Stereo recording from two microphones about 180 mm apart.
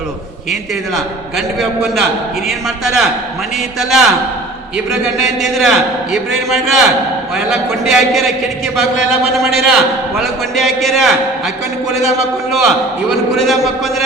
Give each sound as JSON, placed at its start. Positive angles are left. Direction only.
{"t": 0.9, "sound": "a man's voice", "side_deg": 0}
{"t": 5.4, "sound": "a man's voice", "side_deg": 0}